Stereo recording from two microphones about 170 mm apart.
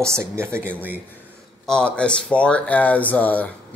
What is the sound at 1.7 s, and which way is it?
Speech, 5° left (ahead or behind).